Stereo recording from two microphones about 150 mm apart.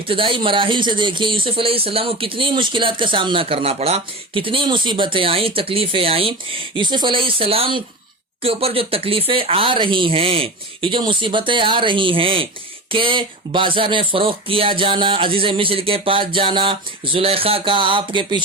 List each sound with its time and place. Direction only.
0.1 s speech: 35° right (ahead or behind)